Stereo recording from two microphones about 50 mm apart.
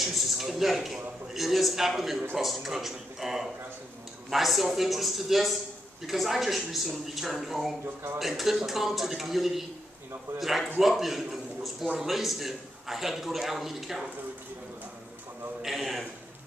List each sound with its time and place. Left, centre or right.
0.0 s a man's voice: centre
7.8 s speech: right
8.2 s a man's voice: centre
15.6 s a sound: centre